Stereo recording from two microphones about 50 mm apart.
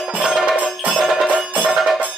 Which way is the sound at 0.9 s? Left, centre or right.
Centre.